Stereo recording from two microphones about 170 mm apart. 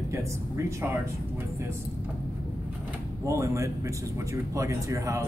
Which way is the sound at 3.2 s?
15° right (ahead or behind).